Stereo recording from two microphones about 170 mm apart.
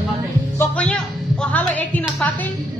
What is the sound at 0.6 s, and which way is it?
Music, 10° left (ahead or behind).